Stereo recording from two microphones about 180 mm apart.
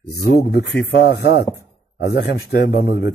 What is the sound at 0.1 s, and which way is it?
A man's voice, 60° left (ahead or behind).